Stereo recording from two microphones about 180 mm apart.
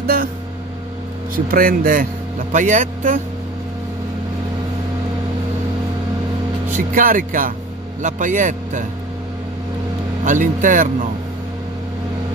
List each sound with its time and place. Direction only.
0.0 s a sound: 55° right (ahead or behind)
1.3 s speech: 55° right (ahead or behind)
6.7 s speech: 50° right (ahead or behind)
10.2 s speech: 45° right (ahead or behind)